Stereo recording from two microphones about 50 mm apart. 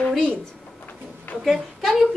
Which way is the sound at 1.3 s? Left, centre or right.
Left.